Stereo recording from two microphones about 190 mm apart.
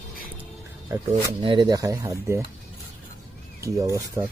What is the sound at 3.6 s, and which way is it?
Speech, 15° right (ahead or behind).